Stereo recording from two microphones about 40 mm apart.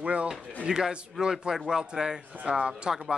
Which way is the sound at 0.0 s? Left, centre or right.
Right.